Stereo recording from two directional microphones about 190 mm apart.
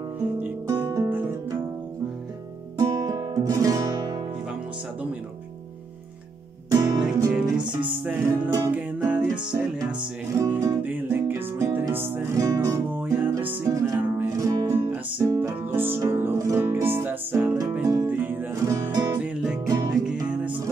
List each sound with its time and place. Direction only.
0.2 s guitar: 10° right (ahead or behind)
2.8 s guitar: 20° right (ahead or behind)
7.3 s music: 5° right (ahead or behind)
10.3 s music: 15° right (ahead or behind)
19.2 s music: 5° right (ahead or behind)
19.6 s music: 15° right (ahead or behind)